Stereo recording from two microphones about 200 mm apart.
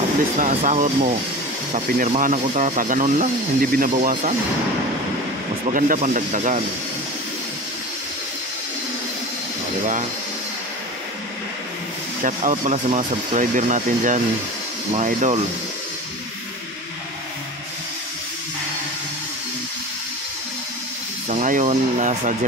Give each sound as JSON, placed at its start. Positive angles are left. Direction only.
{"t": 0.4, "sound": "speech", "side_deg": -35}
{"t": 5.7, "sound": "speech", "side_deg": -40}
{"t": 12.2, "sound": "speech", "side_deg": -40}
{"t": 21.3, "sound": "speech", "side_deg": -40}